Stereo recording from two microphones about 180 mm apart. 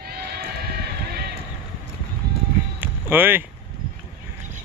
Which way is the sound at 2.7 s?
10° right (ahead or behind).